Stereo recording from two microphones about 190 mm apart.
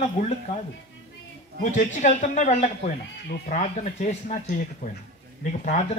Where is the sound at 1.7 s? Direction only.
40° left (ahead or behind).